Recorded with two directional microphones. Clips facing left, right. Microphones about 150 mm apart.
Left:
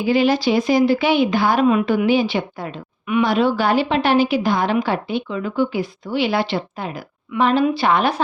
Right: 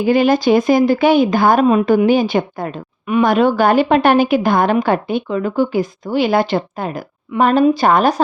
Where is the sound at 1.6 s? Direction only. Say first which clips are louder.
Right 4 dB; 35° right (ahead or behind).